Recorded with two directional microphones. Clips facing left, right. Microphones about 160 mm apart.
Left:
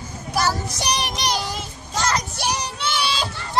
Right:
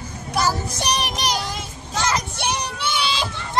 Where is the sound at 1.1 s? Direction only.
Centre (ahead or behind).